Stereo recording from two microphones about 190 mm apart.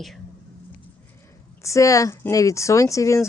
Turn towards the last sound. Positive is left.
turn(degrees=15)  # may be behind; listen again after turning